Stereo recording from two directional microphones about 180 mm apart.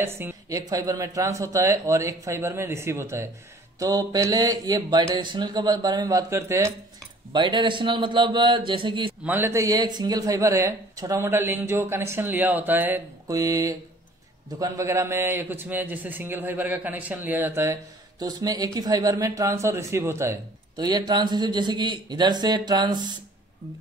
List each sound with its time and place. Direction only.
0.0 s speech: 15° right (ahead or behind)
7.3 s speech: 25° right (ahead or behind)
9.2 s speech: 10° right (ahead or behind)